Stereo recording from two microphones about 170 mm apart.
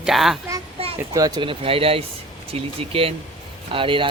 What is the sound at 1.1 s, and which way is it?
Speech, 20° right (ahead or behind).